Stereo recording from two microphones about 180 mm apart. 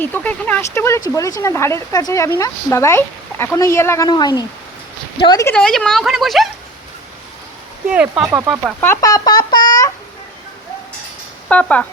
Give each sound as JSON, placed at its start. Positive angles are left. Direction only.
{"t": 0.0, "sound": "speech", "side_deg": 10}
{"t": 5.5, "sound": "speech", "side_deg": 5}
{"t": 7.9, "sound": "speech", "side_deg": -5}
{"t": 8.8, "sound": "a sound", "side_deg": 15}
{"t": 11.4, "sound": "speech", "side_deg": 5}